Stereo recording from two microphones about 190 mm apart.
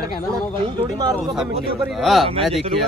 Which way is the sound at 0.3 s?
20° right (ahead or behind).